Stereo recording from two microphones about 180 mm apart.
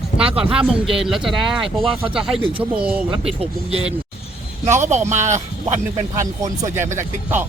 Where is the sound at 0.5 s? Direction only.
5° right (ahead or behind).